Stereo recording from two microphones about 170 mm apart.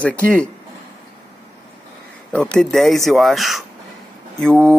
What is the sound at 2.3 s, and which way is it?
Speech, 5° left (ahead or behind).